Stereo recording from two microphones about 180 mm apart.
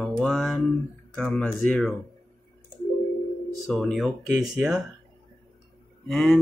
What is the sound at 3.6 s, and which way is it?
Speech, centre (ahead or behind).